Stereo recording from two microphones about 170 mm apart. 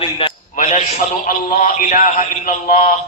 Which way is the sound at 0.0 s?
30° left (ahead or behind).